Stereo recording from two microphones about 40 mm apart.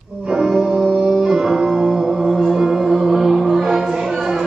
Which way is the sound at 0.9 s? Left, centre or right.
Centre.